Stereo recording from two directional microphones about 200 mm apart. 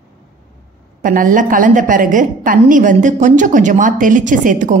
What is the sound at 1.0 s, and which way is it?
A woman's voice, 40° right (ahead or behind).